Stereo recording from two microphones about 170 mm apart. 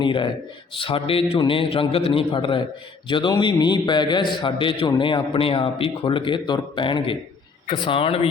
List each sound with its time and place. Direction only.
0.0 s a man's voice: 30° left (ahead or behind)